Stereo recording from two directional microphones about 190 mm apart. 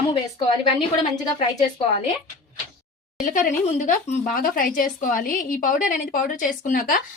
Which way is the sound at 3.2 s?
45° left (ahead or behind).